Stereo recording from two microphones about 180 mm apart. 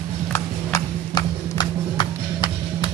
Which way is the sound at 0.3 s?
20° left (ahead or behind).